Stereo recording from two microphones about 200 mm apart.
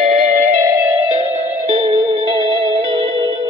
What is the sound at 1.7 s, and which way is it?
Music, 20° right (ahead or behind).